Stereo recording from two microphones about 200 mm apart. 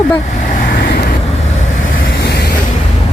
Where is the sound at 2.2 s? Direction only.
55° left (ahead or behind).